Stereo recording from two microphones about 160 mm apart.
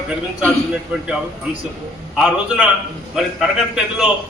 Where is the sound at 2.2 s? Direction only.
5° right (ahead or behind).